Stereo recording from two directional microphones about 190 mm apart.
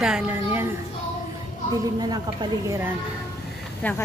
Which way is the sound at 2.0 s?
20° right (ahead or behind).